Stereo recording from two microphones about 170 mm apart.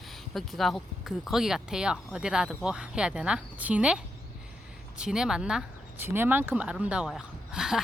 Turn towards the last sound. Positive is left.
turn(degrees=-5)  # may be behind; listen again after turning